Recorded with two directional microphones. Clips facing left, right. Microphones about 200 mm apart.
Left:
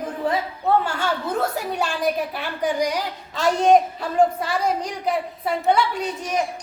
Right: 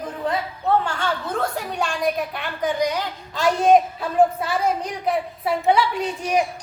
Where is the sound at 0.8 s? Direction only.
5° left (ahead or behind).